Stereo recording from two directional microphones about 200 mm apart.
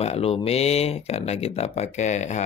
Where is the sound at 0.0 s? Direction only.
30° left (ahead or behind).